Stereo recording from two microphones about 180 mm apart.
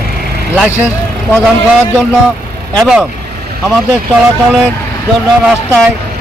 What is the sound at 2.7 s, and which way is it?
Speech, centre (ahead or behind).